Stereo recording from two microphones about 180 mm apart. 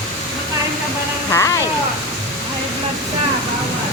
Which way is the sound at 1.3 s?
15° left (ahead or behind).